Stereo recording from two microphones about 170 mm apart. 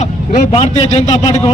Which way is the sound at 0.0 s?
40° left (ahead or behind).